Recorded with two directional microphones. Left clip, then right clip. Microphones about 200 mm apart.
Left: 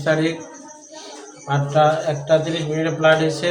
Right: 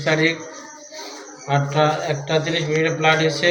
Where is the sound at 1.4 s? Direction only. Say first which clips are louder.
Left 2 dB; 25° left (ahead or behind).